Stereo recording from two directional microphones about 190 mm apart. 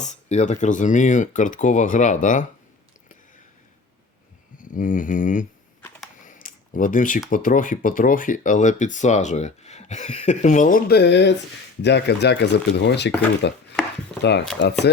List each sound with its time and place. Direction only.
0.0 s speech: 35° left (ahead or behind)
4.5 s a sound: 45° left (ahead or behind)
7.3 s speech: 45° left (ahead or behind); by 13.1 s 60° left (ahead or behind)
13.4 s chopping: 65° left (ahead or behind)
14.2 s speech: 60° left (ahead or behind)